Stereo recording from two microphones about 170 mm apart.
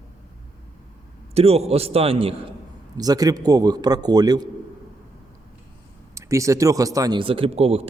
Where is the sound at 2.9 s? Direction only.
20° right (ahead or behind).